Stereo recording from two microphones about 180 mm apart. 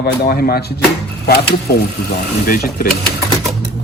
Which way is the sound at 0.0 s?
60° left (ahead or behind).